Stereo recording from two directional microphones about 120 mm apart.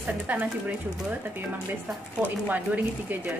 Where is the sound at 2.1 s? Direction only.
10° right (ahead or behind).